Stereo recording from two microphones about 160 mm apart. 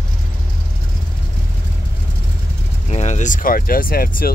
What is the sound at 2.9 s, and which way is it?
Speech, 45° left (ahead or behind).